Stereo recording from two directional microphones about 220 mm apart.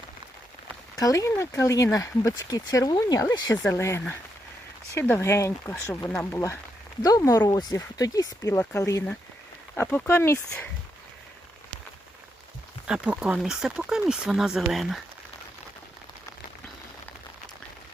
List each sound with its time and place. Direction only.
0.9 s speech: 15° left (ahead or behind)
12.9 s speech: 5° right (ahead or behind)